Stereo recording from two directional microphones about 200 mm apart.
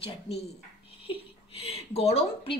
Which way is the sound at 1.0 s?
30° left (ahead or behind).